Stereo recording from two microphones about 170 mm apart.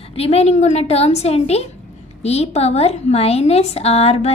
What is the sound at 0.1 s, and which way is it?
Speech, 35° left (ahead or behind).